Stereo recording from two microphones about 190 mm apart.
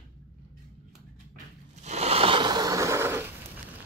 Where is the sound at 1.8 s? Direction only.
35° right (ahead or behind); by 3.3 s 15° right (ahead or behind).